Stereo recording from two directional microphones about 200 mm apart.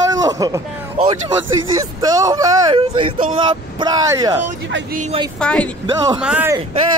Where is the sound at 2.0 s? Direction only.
15° right (ahead or behind).